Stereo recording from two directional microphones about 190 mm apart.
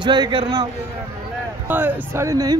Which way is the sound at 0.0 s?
25° right (ahead or behind).